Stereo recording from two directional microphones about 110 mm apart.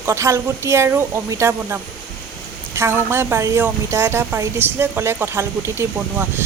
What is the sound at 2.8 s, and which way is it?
Speech, 25° right (ahead or behind).